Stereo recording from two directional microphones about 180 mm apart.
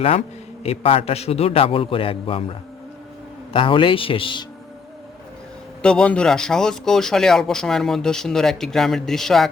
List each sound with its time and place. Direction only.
0.6 s a man's voice: 35° left (ahead or behind)
3.5 s a man's voice: 30° left (ahead or behind)
5.8 s speech: 5° left (ahead or behind)